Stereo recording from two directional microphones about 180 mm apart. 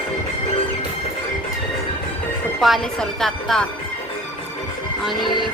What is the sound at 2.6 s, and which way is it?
Speech, centre (ahead or behind).